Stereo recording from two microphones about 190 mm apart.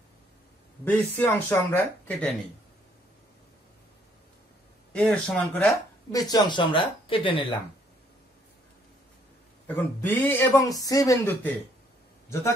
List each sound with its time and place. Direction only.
0.8 s speech: 10° left (ahead or behind)
4.9 s speech: 5° left (ahead or behind)
6.1 s speech: 20° left (ahead or behind)
9.8 s speech: 10° left (ahead or behind)